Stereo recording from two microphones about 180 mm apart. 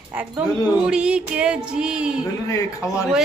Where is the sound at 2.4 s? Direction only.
15° left (ahead or behind).